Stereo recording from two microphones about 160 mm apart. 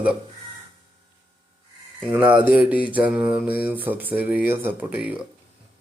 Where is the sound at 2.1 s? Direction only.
10° right (ahead or behind).